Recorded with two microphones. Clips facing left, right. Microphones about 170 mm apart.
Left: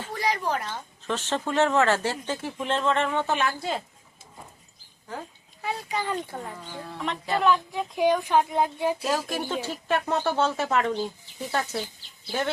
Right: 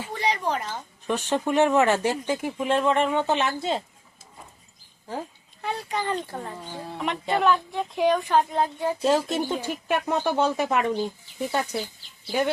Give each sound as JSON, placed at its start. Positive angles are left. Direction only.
{"t": 0.1, "sound": "a sound", "side_deg": 0}
{"t": 0.7, "sound": "speech", "side_deg": -15}
{"t": 5.6, "sound": "a child's voice", "side_deg": 0}
{"t": 6.7, "sound": "speech", "side_deg": -30}
{"t": 7.0, "sound": "speech", "side_deg": -15}
{"t": 7.4, "sound": "a child's voice", "side_deg": 0}
{"t": 9.0, "sound": "speech", "side_deg": -25}
{"t": 9.5, "sound": "speech", "side_deg": -15}